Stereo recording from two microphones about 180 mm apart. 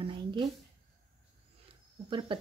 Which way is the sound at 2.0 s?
25° right (ahead or behind).